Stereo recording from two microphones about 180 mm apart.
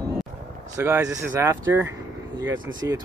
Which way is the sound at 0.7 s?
15° right (ahead or behind).